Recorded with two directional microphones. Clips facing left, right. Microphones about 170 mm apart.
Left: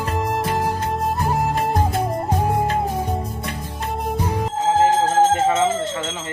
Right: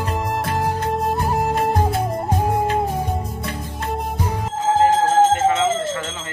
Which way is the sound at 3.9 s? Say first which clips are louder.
Left 1 dB; centre (ahead or behind).